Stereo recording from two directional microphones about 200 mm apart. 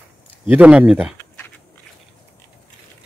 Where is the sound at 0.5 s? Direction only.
5° right (ahead or behind).